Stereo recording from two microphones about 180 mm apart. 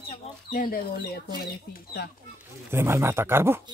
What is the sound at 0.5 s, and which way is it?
Speech, 55° left (ahead or behind).